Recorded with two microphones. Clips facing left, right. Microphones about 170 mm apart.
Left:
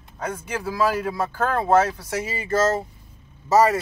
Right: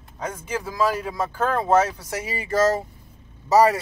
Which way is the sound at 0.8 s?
5° left (ahead or behind).